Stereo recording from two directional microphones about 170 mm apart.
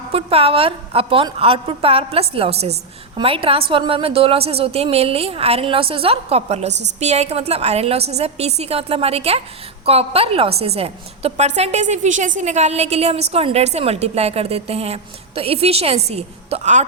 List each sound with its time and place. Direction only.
0.1 s a woman's voice: 35° right (ahead or behind)